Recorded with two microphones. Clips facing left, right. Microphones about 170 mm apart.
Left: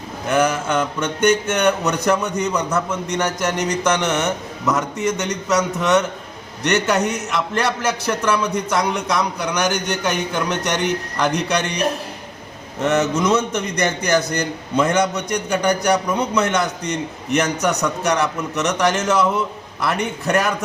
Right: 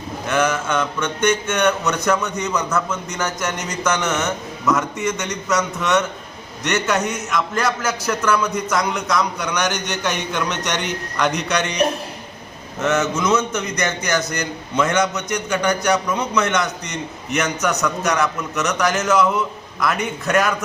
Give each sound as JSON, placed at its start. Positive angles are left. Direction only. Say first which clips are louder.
{"t": 0.3, "sound": "a man's voice", "louder": "left 2 dB", "side_deg": 35}
{"t": 9.6, "sound": "a man's voice", "louder": "left 3 dB", "side_deg": 10}
{"t": 11.2, "sound": "a man's voice", "louder": "even", "side_deg": 30}
{"t": 12.8, "sound": "a man's voice", "louder": "left 2 dB", "side_deg": 35}